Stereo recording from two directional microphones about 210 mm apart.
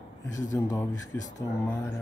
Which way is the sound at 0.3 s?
15° left (ahead or behind).